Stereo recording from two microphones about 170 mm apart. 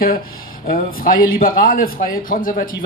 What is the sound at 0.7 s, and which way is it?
Speech, 60° left (ahead or behind).